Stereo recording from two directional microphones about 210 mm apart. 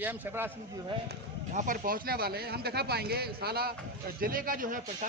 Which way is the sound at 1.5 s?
40° right (ahead or behind).